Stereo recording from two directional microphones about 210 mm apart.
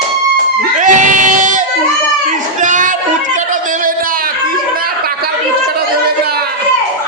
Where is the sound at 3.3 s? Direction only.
40° right (ahead or behind).